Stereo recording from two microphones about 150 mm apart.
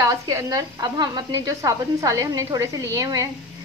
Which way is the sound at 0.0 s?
25° right (ahead or behind).